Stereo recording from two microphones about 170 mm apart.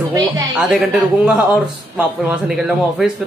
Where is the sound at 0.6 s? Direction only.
5° right (ahead or behind).